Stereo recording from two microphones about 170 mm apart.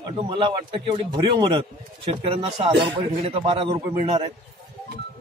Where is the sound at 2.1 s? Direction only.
40° right (ahead or behind).